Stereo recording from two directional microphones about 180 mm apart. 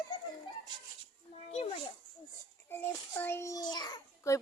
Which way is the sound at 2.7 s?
10° left (ahead or behind).